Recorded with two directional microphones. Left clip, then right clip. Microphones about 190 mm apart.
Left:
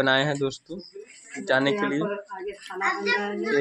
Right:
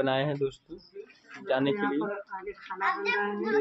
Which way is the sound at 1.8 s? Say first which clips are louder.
Left 3 dB; 40° left (ahead or behind).